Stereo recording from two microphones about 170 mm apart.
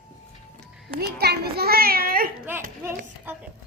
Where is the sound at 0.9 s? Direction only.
70° right (ahead or behind).